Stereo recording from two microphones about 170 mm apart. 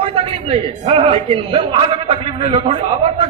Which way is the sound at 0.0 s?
35° right (ahead or behind).